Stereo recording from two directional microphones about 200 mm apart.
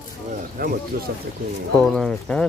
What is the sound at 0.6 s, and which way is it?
Speech, 45° right (ahead or behind).